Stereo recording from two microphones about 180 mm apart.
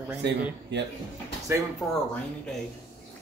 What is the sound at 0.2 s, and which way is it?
Speech, 75° right (ahead or behind).